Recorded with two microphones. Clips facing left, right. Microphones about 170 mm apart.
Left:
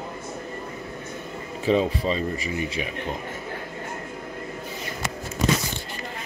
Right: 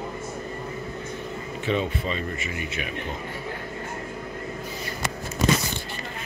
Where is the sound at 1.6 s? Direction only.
35° left (ahead or behind).